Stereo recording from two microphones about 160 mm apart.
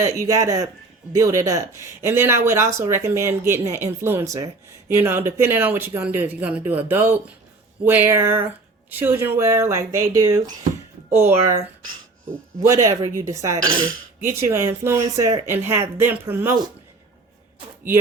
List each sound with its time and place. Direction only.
0.0 s speech: 20° right (ahead or behind)
12.6 s speech: 20° right (ahead or behind)